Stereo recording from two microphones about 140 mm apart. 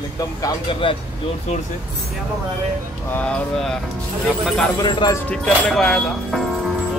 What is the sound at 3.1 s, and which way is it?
Speech, 10° left (ahead or behind).